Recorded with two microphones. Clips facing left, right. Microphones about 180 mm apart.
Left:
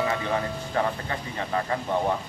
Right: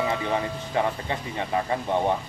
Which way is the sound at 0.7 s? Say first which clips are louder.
Right 2 dB; 20° right (ahead or behind).